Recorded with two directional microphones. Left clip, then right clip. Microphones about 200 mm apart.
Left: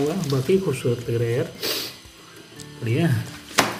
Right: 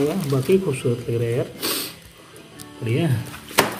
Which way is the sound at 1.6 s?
50° right (ahead or behind).